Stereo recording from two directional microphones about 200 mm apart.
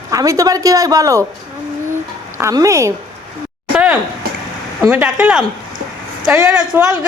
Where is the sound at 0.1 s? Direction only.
15° right (ahead or behind).